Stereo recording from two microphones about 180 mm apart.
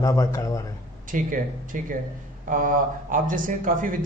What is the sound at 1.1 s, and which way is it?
Speech, 50° right (ahead or behind).